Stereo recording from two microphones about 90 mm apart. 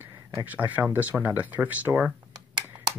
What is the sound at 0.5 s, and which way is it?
Speech, 20° right (ahead or behind).